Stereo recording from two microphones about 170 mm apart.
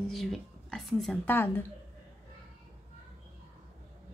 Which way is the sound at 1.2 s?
15° left (ahead or behind).